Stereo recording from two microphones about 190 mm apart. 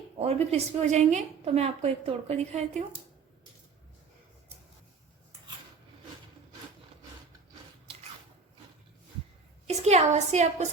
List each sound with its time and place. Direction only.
0.2 s a woman's voice: 35° right (ahead or behind)
9.6 s a woman's voice: 35° right (ahead or behind)